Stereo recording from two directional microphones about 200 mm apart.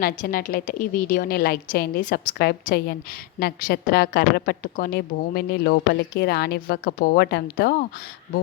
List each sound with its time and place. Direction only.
0.0 s a woman's voice: 45° left (ahead or behind)